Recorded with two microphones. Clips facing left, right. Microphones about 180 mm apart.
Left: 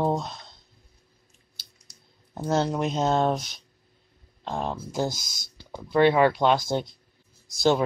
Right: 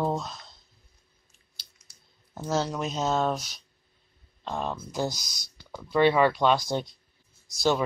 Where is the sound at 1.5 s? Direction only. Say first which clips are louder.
Left 2 dB; 40° left (ahead or behind).